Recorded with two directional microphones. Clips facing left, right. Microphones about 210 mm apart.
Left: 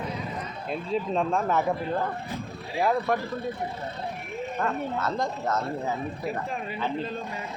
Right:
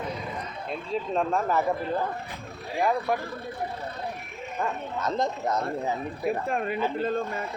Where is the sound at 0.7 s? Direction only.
Centre (ahead or behind).